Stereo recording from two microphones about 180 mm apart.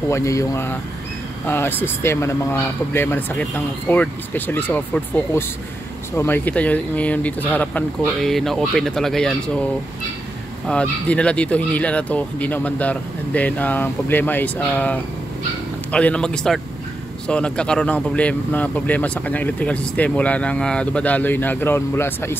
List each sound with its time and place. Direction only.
0.1 s speech: 15° left (ahead or behind)
10.7 s speech: 5° left (ahead or behind)